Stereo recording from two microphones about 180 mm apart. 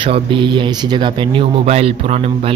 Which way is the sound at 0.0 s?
30° right (ahead or behind).